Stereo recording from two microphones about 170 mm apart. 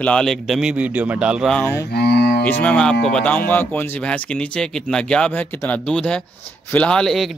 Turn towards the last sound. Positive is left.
turn(degrees=0)  # may be behind; listen again after turning